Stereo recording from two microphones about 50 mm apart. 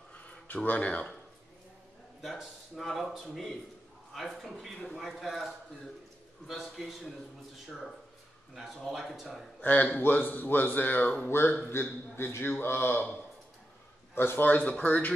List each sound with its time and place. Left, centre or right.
0.7 s speech: left
2.7 s speech: centre
6.8 s speech: centre
8.5 s speech: centre
9.6 s a man's voice: left
11.2 s speech: left
14.1 s speech: left
14.5 s speech: left